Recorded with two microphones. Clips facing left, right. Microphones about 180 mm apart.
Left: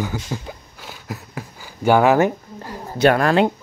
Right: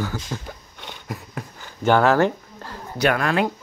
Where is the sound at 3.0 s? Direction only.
35° left (ahead or behind).